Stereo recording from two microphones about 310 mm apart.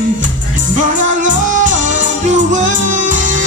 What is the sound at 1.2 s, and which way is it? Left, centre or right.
Music, right.